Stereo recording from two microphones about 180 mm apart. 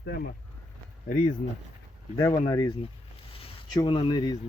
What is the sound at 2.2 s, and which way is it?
Speech, 25° left (ahead or behind).